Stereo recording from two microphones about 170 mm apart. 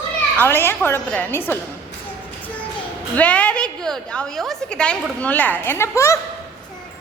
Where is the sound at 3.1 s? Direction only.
10° left (ahead or behind).